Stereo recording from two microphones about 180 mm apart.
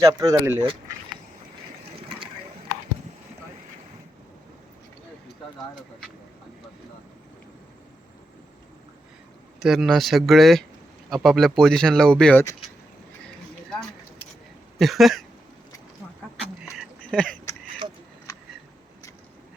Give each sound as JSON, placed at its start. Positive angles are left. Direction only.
{"t": 0.0, "sound": "speech", "side_deg": -20}
{"t": 2.0, "sound": "ratchet", "side_deg": -30}
{"t": 9.6, "sound": "speech", "side_deg": 0}
{"t": 14.8, "sound": "speech", "side_deg": 0}
{"t": 17.1, "sound": "speech", "side_deg": 5}